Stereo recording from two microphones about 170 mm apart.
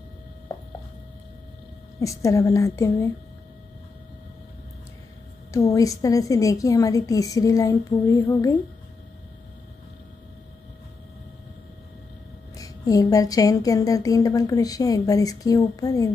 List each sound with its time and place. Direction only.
2.0 s a woman's voice: 20° left (ahead or behind)
5.5 s speech: 20° left (ahead or behind)
12.5 s speech: 20° left (ahead or behind)